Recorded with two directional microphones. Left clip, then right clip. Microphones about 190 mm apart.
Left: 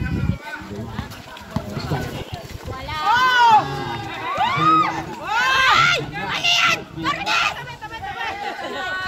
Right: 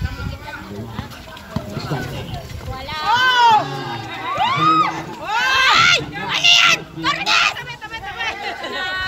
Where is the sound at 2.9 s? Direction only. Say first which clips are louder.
Right 1 dB; 60° left (ahead or behind).